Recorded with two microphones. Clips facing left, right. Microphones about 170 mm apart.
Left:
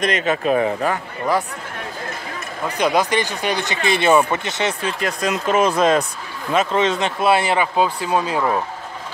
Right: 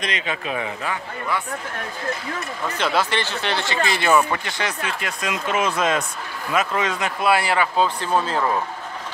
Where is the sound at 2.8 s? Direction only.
15° left (ahead or behind).